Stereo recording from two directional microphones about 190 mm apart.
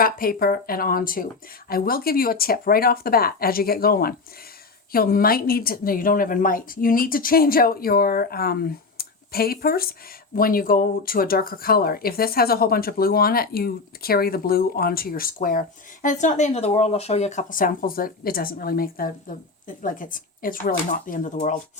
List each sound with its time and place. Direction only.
0.0 s speech: 50° left (ahead or behind)